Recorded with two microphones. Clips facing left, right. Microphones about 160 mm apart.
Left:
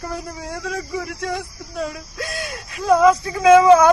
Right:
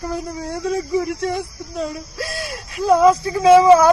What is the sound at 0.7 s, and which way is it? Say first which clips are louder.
Speech: right 8 dB; 30° right (ahead or behind).